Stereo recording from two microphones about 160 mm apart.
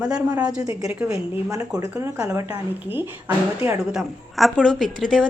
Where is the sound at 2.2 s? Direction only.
15° right (ahead or behind).